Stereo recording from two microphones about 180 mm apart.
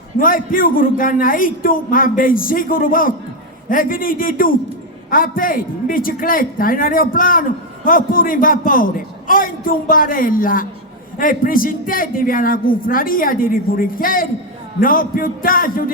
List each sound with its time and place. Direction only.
0.2 s a man's voice: 50° left (ahead or behind)